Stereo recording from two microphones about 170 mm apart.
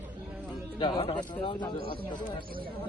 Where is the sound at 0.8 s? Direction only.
30° left (ahead or behind).